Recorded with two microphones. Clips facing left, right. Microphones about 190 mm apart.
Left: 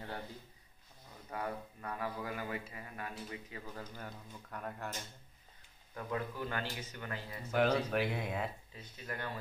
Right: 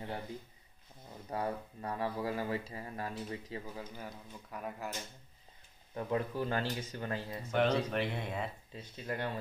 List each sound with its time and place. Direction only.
1.3 s speech: 30° right (ahead or behind)
3.7 s a man's voice: 5° right (ahead or behind)
5.9 s speech: 25° right (ahead or behind)
7.5 s speech: 5° left (ahead or behind)
8.7 s speech: 25° right (ahead or behind)